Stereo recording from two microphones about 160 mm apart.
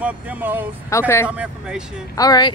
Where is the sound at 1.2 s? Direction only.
5° right (ahead or behind).